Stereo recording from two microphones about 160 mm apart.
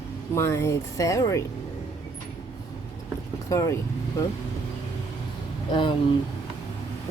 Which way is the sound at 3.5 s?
20° left (ahead or behind).